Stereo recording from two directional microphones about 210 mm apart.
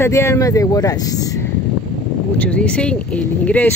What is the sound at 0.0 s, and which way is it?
Speech, 10° left (ahead or behind).